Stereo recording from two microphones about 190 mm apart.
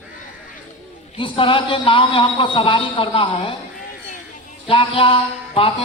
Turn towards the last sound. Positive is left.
turn(degrees=30)  # may be behind; listen again after turning